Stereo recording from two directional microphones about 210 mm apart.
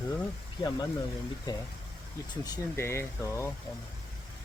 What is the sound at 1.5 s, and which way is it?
Speech, 20° left (ahead or behind).